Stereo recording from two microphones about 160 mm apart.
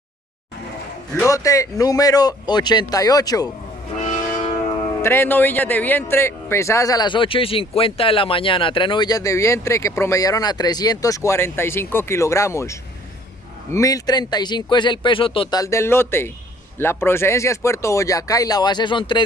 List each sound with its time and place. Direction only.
1.1 s a man's voice: 20° left (ahead or behind)
5.0 s a man's voice: 15° left (ahead or behind); by 15.6 s 35° left (ahead or behind)
15.6 s a man's voice: 15° left (ahead or behind)